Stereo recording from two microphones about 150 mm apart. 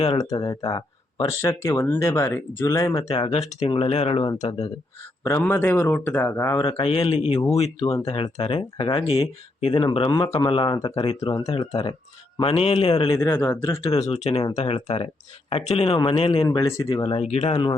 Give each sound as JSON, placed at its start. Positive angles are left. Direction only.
{"t": 0.0, "sound": "speech", "side_deg": 40}
{"t": 0.3, "sound": "speech", "side_deg": 25}
{"t": 3.1, "sound": "speech", "side_deg": 35}
{"t": 4.4, "sound": "speech", "side_deg": 45}
{"t": 5.4, "sound": "speech", "side_deg": 15}
{"t": 6.8, "sound": "speech", "side_deg": 40}
{"t": 10.9, "sound": "speech", "side_deg": 40}
{"t": 13.1, "sound": "speech", "side_deg": 15}
{"t": 14.1, "sound": "speech", "side_deg": 45}
{"t": 16.4, "sound": "speech", "side_deg": 25}
{"t": 17.0, "sound": "speech", "side_deg": 40}